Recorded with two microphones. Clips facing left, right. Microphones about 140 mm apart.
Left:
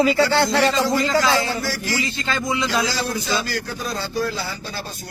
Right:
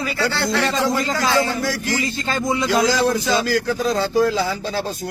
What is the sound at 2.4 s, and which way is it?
Speech, 45° right (ahead or behind).